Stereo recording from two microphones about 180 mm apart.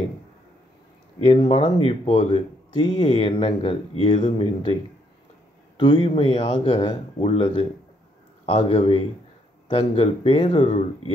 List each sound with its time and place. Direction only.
1.2 s speech: 30° left (ahead or behind)
5.8 s speech: 25° left (ahead or behind)